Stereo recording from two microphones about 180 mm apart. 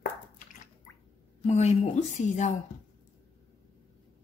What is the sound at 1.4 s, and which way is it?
A woman's voice, 35° left (ahead or behind).